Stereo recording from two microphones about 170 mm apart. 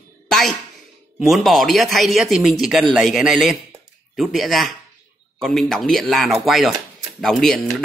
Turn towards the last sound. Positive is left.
turn(degrees=0)  # may be behind; listen again after turning